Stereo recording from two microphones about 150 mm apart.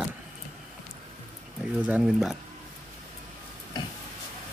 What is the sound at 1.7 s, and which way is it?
Speech, 5° right (ahead or behind).